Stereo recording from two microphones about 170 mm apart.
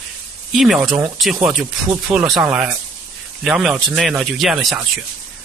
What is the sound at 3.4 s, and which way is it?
Speech, 5° right (ahead or behind).